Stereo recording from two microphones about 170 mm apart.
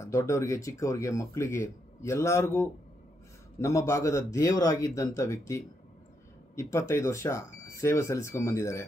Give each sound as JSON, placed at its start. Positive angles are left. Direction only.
{"t": 0.0, "sound": "speech", "side_deg": 15}